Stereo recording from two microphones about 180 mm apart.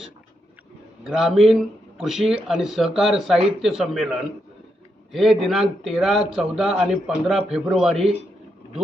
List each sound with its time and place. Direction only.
1.0 s a man's voice: centre (ahead or behind)